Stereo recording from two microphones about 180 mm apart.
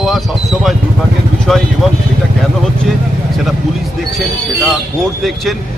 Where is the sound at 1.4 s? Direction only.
Centre (ahead or behind).